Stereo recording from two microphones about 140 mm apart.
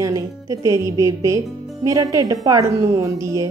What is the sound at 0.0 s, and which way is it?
A woman's voice, 25° right (ahead or behind).